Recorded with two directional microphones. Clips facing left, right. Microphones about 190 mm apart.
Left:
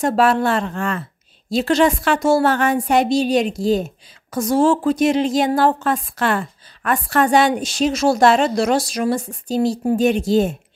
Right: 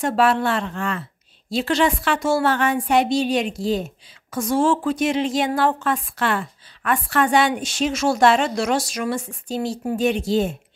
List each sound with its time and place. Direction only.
0.0 s a woman's voice: 45° left (ahead or behind)